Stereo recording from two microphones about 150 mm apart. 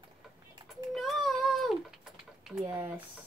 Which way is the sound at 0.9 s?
Centre (ahead or behind).